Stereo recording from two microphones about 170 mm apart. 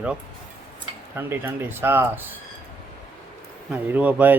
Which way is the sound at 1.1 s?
10° right (ahead or behind).